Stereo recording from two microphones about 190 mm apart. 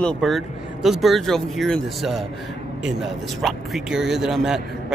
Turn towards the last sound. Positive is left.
turn(degrees=-5)  # may be behind; listen again after turning